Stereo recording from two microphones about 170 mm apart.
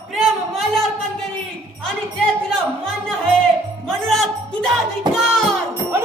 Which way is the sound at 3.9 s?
Centre (ahead or behind).